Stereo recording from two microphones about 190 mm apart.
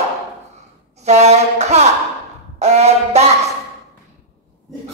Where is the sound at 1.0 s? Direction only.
35° right (ahead or behind).